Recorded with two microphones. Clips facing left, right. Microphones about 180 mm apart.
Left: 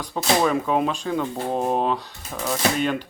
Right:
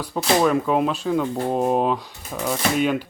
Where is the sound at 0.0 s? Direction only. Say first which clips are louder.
Right 2 dB; 5° right (ahead or behind).